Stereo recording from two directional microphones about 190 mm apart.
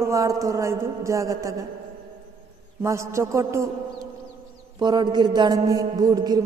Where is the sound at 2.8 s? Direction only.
15° right (ahead or behind).